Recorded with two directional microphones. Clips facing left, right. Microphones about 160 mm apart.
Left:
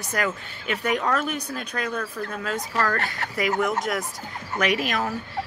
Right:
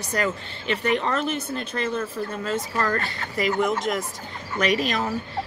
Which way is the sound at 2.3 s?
Centre (ahead or behind).